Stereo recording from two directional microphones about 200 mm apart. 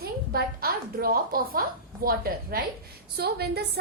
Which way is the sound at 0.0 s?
50° right (ahead or behind).